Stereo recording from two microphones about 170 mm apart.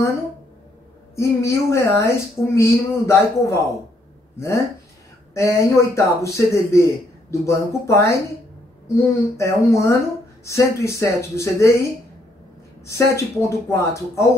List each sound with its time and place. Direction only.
1.1 s a man's voice: 15° left (ahead or behind)
5.3 s a man's voice: 15° left (ahead or behind)
12.8 s a man's voice: 15° left (ahead or behind)